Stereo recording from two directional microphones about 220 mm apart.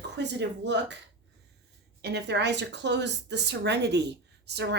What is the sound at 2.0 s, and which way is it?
A woman's voice, 50° right (ahead or behind).